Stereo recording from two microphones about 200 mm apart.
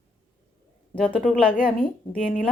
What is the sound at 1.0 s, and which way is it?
Speech, centre (ahead or behind).